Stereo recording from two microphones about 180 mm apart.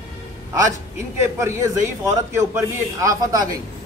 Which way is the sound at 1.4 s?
15° right (ahead or behind).